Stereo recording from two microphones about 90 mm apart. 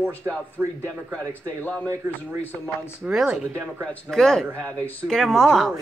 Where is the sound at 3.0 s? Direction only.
10° right (ahead or behind).